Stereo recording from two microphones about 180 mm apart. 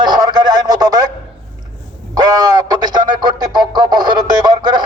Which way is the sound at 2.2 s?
20° right (ahead or behind).